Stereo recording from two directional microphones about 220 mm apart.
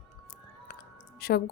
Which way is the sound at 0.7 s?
45° left (ahead or behind).